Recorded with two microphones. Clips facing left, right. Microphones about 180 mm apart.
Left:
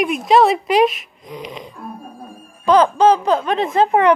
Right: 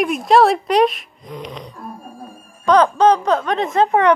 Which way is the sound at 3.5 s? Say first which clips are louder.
Left 1 dB; 30° left (ahead or behind).